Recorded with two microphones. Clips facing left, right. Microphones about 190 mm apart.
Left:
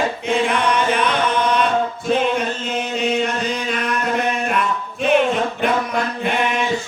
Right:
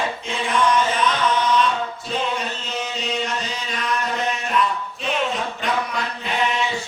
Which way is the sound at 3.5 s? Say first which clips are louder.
Left 5 dB; 60° left (ahead or behind).